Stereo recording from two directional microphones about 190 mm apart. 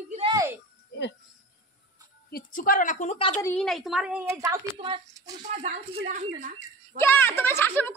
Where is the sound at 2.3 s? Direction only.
50° left (ahead or behind).